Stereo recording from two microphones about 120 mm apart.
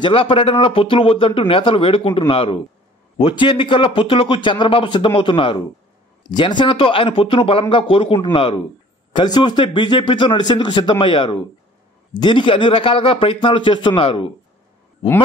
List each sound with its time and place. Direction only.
0.0 s speech: 50° left (ahead or behind)